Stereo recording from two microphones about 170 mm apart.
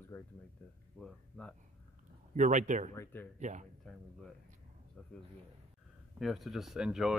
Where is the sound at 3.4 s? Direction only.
45° right (ahead or behind).